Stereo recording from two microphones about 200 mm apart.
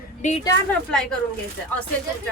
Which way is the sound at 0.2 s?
35° left (ahead or behind).